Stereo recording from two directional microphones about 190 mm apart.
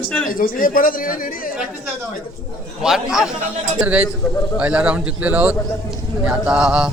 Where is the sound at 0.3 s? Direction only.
45° left (ahead or behind).